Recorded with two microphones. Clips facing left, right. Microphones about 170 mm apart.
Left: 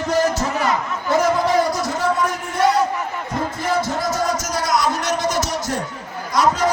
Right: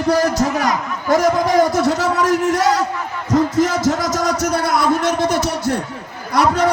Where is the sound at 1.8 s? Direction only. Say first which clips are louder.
Right 4 dB; 75° right (ahead or behind).